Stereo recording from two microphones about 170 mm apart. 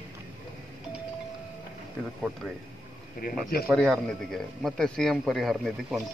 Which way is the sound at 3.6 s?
Centre (ahead or behind).